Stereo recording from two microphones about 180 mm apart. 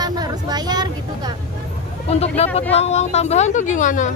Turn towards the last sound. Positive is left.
turn(degrees=45)  # may be behind; listen again after turning